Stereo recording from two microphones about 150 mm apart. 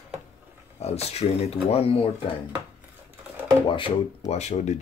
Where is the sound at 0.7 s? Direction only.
45° left (ahead or behind).